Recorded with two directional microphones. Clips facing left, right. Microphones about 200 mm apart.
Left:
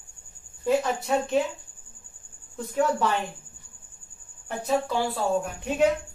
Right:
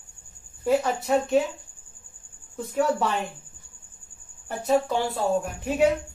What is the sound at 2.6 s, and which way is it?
Speech, centre (ahead or behind).